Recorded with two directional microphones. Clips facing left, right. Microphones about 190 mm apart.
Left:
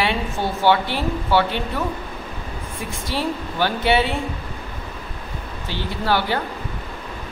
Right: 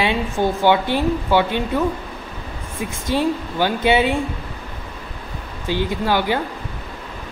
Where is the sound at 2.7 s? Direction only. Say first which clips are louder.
Right 6 dB; 20° right (ahead or behind).